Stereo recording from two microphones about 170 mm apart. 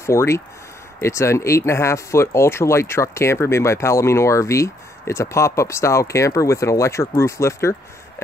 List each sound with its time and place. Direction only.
0.0 s speech: 15° left (ahead or behind)